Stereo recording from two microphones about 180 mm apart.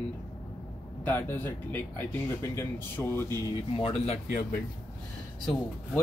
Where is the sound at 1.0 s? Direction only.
10° left (ahead or behind).